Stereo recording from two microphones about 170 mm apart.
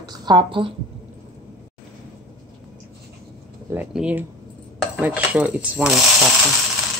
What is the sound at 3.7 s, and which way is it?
Speech, 5° right (ahead or behind).